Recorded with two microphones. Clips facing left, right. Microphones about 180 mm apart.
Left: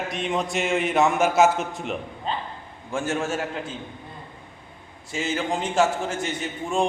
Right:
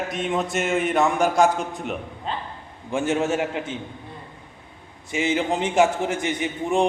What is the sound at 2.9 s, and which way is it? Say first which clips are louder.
Speech: right 4 dB; 20° right (ahead or behind).